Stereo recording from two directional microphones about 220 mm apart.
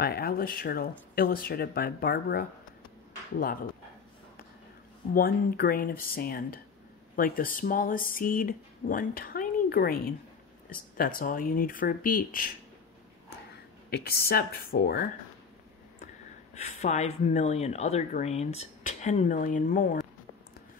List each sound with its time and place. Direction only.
0.0 s speech: 45° left (ahead or behind)
5.1 s speech: 40° left (ahead or behind)
13.8 s speech: 45° left (ahead or behind)
16.5 s speech: 30° left (ahead or behind)